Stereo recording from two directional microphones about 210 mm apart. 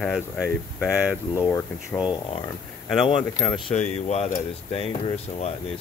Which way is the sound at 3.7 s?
30° left (ahead or behind).